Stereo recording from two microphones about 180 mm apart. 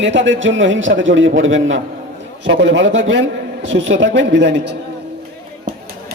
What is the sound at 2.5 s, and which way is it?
A man's voice, 75° right (ahead or behind).